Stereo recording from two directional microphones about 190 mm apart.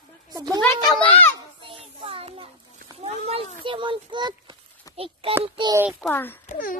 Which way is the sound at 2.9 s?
30° right (ahead or behind).